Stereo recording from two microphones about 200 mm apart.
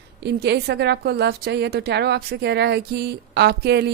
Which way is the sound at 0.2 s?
55° right (ahead or behind).